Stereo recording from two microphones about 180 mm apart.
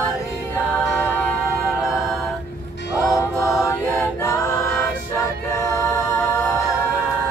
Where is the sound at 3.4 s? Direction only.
Centre (ahead or behind).